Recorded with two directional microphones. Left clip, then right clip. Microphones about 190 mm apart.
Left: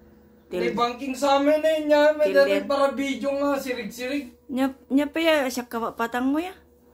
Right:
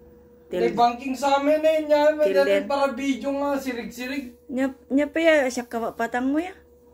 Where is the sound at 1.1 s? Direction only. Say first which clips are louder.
Even; 20° left (ahead or behind).